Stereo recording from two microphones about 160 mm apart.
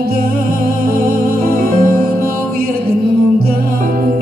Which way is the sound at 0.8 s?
65° right (ahead or behind).